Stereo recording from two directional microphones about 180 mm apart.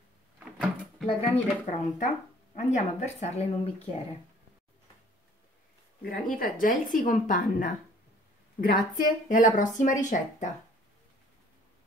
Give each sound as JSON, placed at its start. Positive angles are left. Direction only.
{"t": 1.0, "sound": "speech", "side_deg": 35}
{"t": 6.0, "sound": "speech", "side_deg": 50}